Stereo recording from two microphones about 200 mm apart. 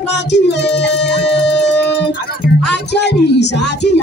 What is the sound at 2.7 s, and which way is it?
Speech, 60° left (ahead or behind).